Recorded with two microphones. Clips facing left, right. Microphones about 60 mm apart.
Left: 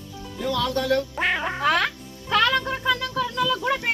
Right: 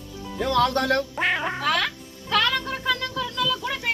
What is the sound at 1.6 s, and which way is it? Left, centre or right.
Speech, left.